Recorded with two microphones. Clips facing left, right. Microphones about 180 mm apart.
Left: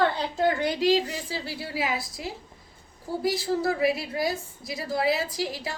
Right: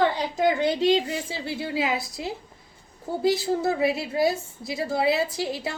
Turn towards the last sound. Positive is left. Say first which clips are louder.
# right 2 dB
turn(degrees=-25)  # may be behind; listen again after turning